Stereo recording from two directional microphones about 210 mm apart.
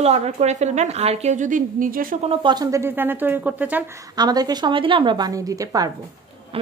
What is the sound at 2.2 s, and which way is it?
Speech, 20° right (ahead or behind).